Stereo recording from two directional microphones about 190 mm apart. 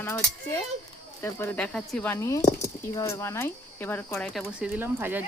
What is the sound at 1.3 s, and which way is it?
Speech, 10° left (ahead or behind).